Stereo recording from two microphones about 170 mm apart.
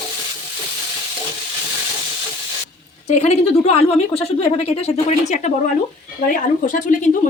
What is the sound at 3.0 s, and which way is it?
A woman's voice, 40° left (ahead or behind).